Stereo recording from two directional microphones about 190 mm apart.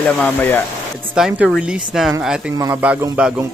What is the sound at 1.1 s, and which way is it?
A man's voice, 5° right (ahead or behind).